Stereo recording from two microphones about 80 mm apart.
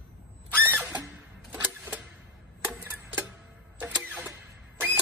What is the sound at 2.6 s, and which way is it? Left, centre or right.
Tick-tock, right.